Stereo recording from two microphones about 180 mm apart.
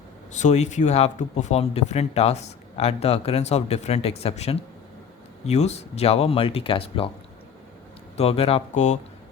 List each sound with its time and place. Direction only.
0.3 s speech: 40° left (ahead or behind)
8.1 s speech: 35° left (ahead or behind)